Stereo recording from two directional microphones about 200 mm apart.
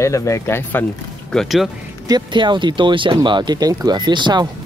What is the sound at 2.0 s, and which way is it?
Speech, 20° right (ahead or behind).